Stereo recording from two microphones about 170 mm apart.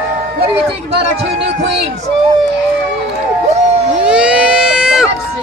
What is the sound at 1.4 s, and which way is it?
Speech, 85° right.